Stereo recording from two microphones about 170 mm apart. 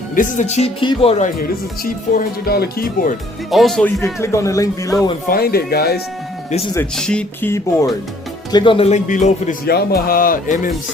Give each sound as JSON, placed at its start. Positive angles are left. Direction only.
{"t": 0.2, "sound": "speech", "side_deg": 45}
{"t": 1.2, "sound": "speech", "side_deg": 55}
{"t": 3.5, "sound": "speech", "side_deg": 0}
{"t": 4.0, "sound": "speech", "side_deg": 15}
{"t": 5.3, "sound": "speech", "side_deg": 65}
{"t": 6.9, "sound": "speech", "side_deg": 5}
{"t": 8.5, "sound": "speech", "side_deg": 30}
{"t": 9.0, "sound": "speech", "side_deg": 50}
{"t": 9.6, "sound": "speech", "side_deg": 65}